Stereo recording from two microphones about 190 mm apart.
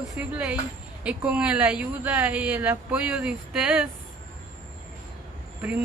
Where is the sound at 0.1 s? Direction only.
5° right (ahead or behind).